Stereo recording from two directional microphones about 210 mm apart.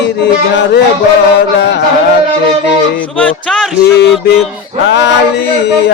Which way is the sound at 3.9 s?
55° left (ahead or behind).